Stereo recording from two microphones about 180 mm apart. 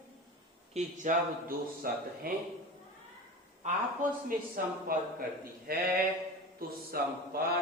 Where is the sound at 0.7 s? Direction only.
45° right (ahead or behind).